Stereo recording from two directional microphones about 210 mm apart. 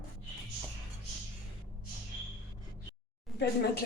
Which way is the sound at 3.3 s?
50° left (ahead or behind).